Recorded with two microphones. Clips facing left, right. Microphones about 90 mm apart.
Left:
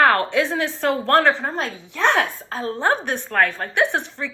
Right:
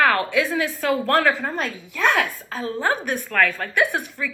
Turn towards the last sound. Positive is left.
turn(degrees=30)  # may be behind; listen again after turning